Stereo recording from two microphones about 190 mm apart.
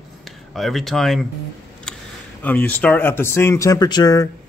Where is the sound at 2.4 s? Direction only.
10° left (ahead or behind).